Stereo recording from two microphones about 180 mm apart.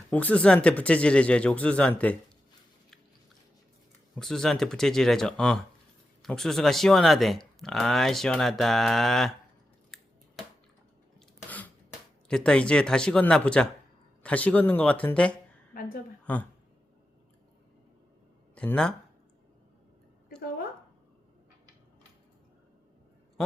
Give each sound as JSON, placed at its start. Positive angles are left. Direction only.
{"t": 0.1, "sound": "speech", "side_deg": 10}
{"t": 4.1, "sound": "speech", "side_deg": 5}
{"t": 9.9, "sound": "scissors", "side_deg": 0}
{"t": 11.4, "sound": "a sound", "side_deg": 10}
{"t": 12.3, "sound": "speech", "side_deg": 5}
{"t": 15.7, "sound": "a woman's voice", "side_deg": 55}
{"t": 16.2, "sound": "a woman's voice", "side_deg": 10}
{"t": 18.5, "sound": "speech", "side_deg": 5}